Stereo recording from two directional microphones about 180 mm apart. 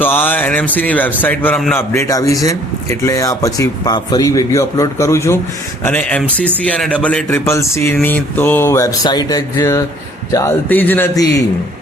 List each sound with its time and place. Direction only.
0.0 s a man's voice: 10° left (ahead or behind)